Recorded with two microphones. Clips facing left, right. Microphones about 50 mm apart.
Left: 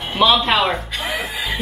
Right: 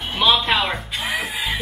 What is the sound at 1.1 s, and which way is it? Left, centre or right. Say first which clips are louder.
Music: right 1 dB; centre.